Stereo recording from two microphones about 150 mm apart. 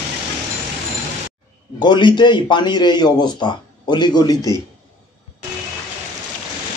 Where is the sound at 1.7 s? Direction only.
30° left (ahead or behind).